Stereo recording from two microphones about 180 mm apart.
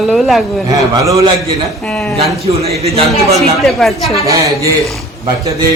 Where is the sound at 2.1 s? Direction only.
35° right (ahead or behind).